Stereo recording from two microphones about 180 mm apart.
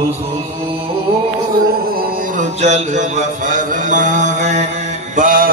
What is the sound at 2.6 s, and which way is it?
Mantra, 40° right (ahead or behind).